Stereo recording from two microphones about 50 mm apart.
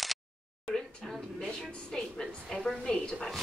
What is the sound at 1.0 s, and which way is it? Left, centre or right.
A woman's voice, centre.